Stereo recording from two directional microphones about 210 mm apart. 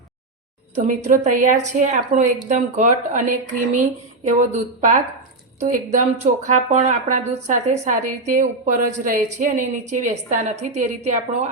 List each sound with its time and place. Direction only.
0.8 s speech: 40° right (ahead or behind)